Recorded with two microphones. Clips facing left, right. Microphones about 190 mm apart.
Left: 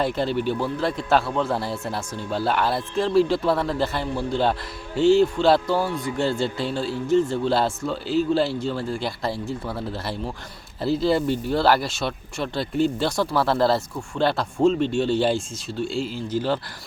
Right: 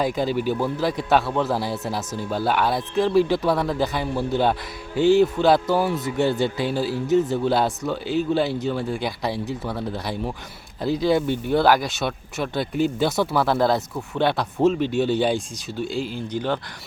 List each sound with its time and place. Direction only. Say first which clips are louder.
0.0 s a man's voice: right 1 dB; centre (ahead or behind)
5.9 s speech: right 2 dB; 20° right (ahead or behind)
6.6 s a man's voice: right 2 dB; 5° right (ahead or behind)